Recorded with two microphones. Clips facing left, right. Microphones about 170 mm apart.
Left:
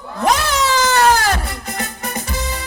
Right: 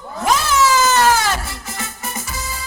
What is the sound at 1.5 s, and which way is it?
Music, 60° left (ahead or behind).